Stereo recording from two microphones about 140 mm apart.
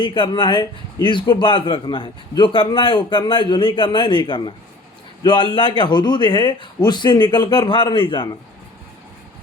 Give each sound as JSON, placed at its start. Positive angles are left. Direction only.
{"t": 0.0, "sound": "a man's voice", "side_deg": 35}